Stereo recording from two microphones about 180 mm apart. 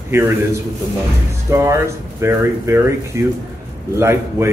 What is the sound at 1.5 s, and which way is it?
Speech, 15° right (ahead or behind).